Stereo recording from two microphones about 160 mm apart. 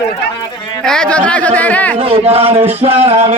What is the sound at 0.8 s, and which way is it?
Speech, 5° left (ahead or behind).